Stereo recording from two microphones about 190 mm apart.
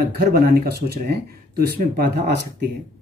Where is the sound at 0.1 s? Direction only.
55° right (ahead or behind).